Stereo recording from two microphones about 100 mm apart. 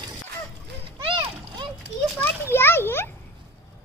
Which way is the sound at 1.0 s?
50° right (ahead or behind).